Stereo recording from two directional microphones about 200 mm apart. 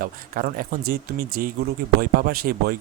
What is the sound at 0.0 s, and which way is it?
Speech, 45° right (ahead or behind).